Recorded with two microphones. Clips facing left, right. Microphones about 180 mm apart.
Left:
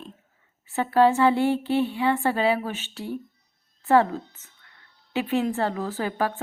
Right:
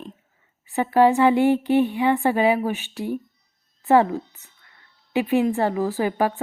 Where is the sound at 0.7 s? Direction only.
15° right (ahead or behind).